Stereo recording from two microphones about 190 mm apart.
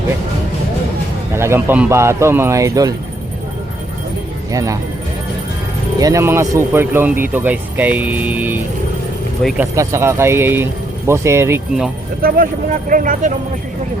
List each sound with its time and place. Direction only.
1.3 s a man's voice: 15° right (ahead or behind)
4.5 s a man's voice: 15° right (ahead or behind)
6.0 s a man's voice: 15° right (ahead or behind); by 9.6 s centre (ahead or behind)
9.7 s a man's voice: 15° right (ahead or behind)
12.2 s speech: 45° right (ahead or behind)